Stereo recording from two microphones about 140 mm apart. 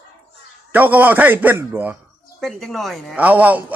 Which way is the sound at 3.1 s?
10° right (ahead or behind).